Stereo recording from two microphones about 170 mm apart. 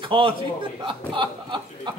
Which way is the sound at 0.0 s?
30° right (ahead or behind).